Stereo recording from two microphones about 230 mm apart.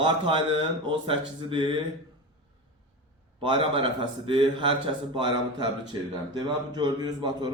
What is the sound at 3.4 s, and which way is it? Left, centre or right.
A man's voice, right.